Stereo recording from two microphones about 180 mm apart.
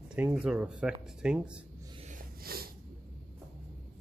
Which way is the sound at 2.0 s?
55° right (ahead or behind).